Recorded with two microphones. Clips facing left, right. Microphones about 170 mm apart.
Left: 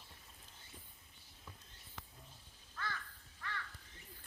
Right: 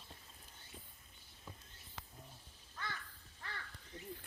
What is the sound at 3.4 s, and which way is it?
Crow, 30° right (ahead or behind).